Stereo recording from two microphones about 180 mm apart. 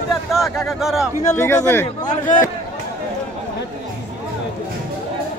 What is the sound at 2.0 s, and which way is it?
Speech, 45° left (ahead or behind).